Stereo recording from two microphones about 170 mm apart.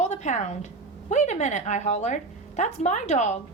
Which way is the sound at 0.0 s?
40° left (ahead or behind).